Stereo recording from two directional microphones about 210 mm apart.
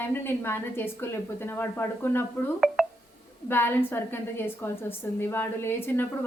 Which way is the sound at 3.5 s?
10° left (ahead or behind).